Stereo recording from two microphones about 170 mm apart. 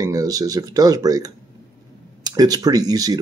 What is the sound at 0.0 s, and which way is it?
Speech, 20° right (ahead or behind).